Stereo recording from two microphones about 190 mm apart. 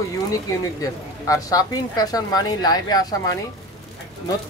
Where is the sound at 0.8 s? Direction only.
20° left (ahead or behind).